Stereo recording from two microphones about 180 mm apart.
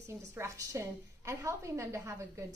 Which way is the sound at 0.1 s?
15° right (ahead or behind).